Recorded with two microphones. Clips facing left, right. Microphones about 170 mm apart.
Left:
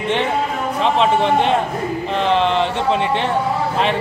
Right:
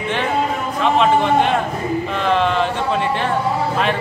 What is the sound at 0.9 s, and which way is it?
Speech, 30° left (ahead or behind).